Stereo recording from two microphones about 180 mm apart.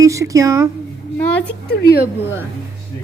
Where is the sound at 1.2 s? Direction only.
10° left (ahead or behind).